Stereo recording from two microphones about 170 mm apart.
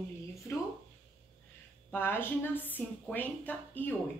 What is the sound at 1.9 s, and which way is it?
A woman's voice, 10° left (ahead or behind).